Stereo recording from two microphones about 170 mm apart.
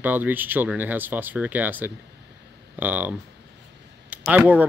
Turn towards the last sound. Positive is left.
turn(degrees=-10)  # may be behind; listen again after turning